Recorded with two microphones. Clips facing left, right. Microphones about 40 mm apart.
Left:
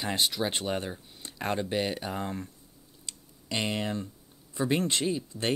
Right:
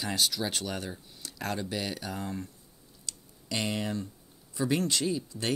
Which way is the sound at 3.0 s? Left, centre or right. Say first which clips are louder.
Even; left.